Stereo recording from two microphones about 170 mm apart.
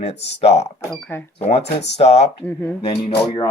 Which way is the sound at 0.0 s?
40° left (ahead or behind).